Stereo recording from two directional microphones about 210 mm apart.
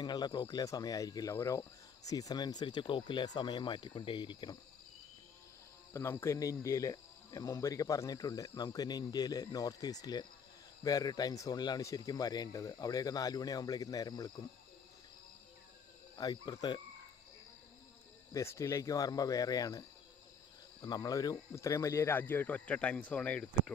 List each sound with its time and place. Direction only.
0.0 s speech: 20° left (ahead or behind)
5.9 s speech: 10° left (ahead or behind)
16.2 s speech: 20° left (ahead or behind)
18.3 s speech: 15° left (ahead or behind)
20.8 s speech: 20° left (ahead or behind)